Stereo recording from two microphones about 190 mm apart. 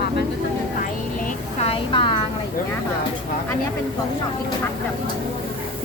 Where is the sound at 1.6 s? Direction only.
30° left (ahead or behind).